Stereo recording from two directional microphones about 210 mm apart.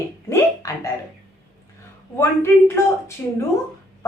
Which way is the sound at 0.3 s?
15° left (ahead or behind).